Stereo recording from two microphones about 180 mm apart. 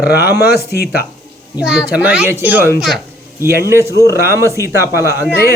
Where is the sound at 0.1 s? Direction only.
65° left (ahead or behind).